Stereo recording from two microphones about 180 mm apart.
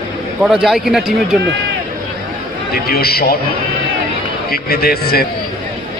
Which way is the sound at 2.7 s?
60° left (ahead or behind).